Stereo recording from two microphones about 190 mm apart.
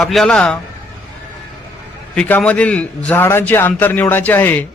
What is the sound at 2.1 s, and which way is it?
A man's voice, 5° left (ahead or behind).